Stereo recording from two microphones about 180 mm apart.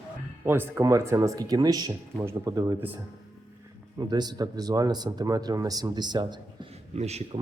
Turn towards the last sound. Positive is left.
turn(degrees=-35)  # may be behind; listen again after turning